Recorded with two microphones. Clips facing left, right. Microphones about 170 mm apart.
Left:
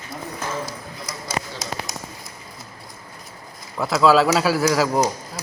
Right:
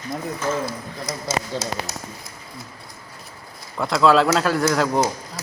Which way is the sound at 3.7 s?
Centre (ahead or behind).